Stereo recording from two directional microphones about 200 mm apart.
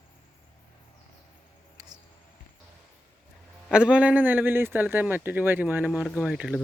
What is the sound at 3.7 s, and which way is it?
A man's voice, 5° right (ahead or behind).